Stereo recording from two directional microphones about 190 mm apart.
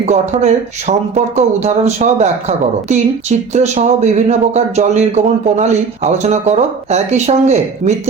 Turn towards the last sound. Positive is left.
turn(degrees=-35)  # may be behind; listen again after turning